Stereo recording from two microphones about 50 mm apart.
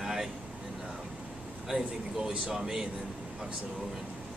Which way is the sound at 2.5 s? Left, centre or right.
Centre.